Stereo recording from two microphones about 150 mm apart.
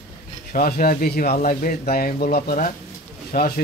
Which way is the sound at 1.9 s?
85° left.